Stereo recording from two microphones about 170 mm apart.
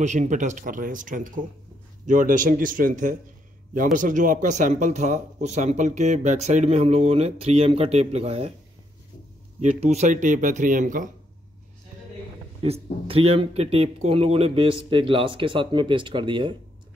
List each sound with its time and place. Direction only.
0.0 s speech: 45° right (ahead or behind)
9.6 s speech: 40° right (ahead or behind)
12.6 s speech: 35° right (ahead or behind)